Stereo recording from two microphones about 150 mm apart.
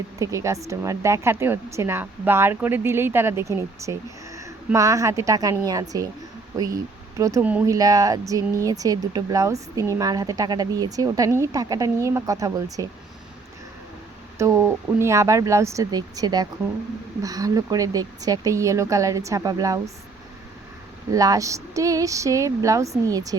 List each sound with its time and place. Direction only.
0.2 s a woman's voice: 20° right (ahead or behind)
7.2 s a woman's voice: 20° right (ahead or behind)
14.3 s a woman's voice: 20° right (ahead or behind)
21.1 s a woman's voice: 20° right (ahead or behind)